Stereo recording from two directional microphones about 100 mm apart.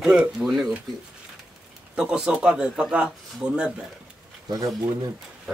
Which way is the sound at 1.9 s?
10° right (ahead or behind).